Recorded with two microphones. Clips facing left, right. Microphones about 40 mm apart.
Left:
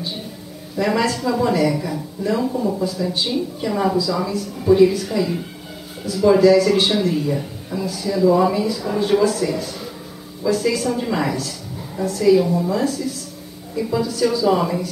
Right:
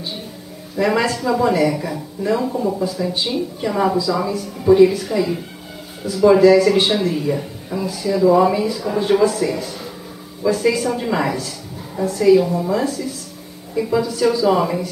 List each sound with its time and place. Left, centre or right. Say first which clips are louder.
0.7 s speech: right 2 dB; centre